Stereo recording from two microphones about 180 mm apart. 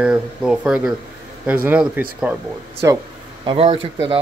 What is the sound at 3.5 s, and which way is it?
Speech, 30° right (ahead or behind).